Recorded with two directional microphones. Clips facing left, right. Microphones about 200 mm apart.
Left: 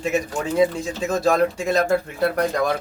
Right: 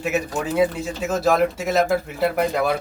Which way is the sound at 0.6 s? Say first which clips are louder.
Left 2 dB; 5° right (ahead or behind).